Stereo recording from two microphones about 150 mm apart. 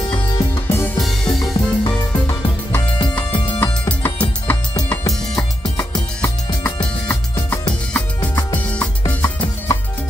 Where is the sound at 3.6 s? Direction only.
10° left (ahead or behind).